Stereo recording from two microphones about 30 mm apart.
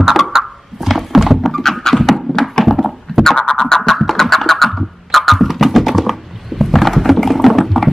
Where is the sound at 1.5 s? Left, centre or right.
Centre.